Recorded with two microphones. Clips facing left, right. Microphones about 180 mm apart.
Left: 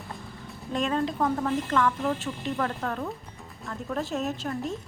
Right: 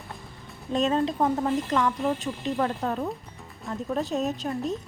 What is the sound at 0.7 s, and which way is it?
A woman's voice, 25° right (ahead or behind).